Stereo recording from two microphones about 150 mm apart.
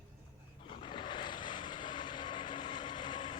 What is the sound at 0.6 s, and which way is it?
Vehicle, 35° left (ahead or behind).